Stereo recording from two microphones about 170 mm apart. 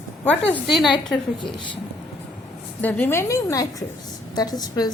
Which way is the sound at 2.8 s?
10° left (ahead or behind).